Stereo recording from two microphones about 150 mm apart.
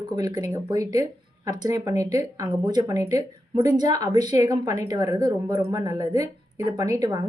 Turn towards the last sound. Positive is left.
turn(degrees=-25)  # may be behind; listen again after turning